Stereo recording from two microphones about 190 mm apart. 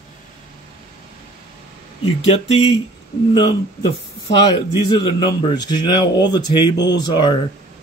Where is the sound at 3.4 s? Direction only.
20° left (ahead or behind).